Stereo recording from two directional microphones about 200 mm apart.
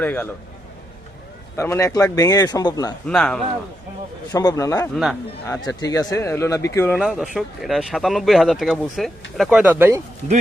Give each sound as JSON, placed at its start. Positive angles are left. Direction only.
{"t": 0.0, "sound": "speech", "side_deg": 10}
{"t": 1.5, "sound": "speech", "side_deg": 15}
{"t": 3.1, "sound": "speech", "side_deg": 5}
{"t": 4.3, "sound": "speech", "side_deg": 15}
{"t": 7.0, "sound": "speech", "side_deg": 0}